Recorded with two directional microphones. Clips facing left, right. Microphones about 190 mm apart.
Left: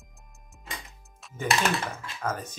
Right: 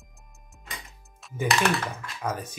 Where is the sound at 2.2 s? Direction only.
15° right (ahead or behind).